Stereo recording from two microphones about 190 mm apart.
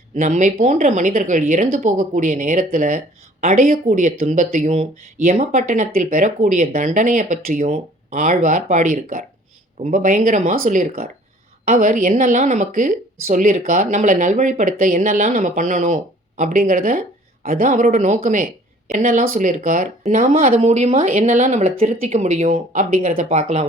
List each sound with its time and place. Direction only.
0.2 s a woman's voice: 40° right (ahead or behind)